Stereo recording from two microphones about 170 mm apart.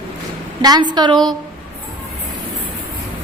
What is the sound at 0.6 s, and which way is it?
Speech, 25° right (ahead or behind).